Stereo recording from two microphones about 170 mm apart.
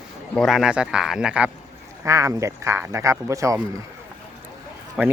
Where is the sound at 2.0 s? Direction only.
15° right (ahead or behind).